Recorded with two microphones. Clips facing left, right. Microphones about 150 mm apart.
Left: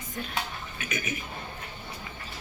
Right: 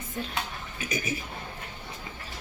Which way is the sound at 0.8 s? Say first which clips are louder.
Right 2 dB; 35° right (ahead or behind).